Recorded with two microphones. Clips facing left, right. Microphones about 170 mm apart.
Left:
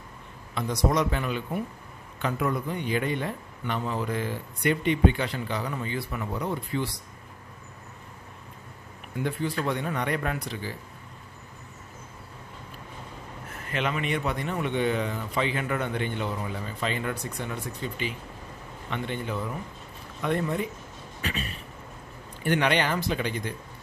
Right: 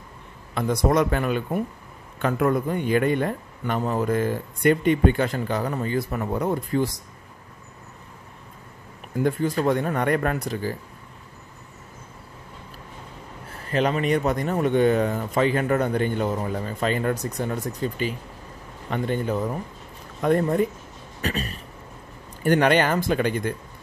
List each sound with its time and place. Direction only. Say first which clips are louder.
0.6 s a man's voice: right 5 dB; 55° right (ahead or behind)
9.1 s a man's voice: right 6 dB; 45° right (ahead or behind)
13.7 s a man's voice: right 7 dB; 40° right (ahead or behind)